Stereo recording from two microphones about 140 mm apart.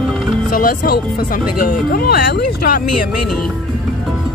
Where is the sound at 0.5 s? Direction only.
90° left.